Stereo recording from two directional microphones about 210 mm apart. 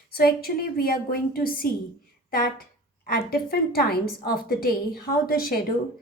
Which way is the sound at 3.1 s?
45° left (ahead or behind).